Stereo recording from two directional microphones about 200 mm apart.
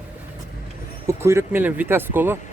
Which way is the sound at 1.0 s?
15° right (ahead or behind).